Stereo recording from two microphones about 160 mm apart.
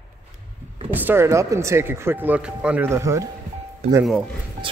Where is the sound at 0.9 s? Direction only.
15° right (ahead or behind).